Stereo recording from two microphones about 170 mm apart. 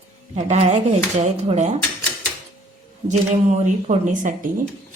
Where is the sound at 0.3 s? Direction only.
40° right (ahead or behind).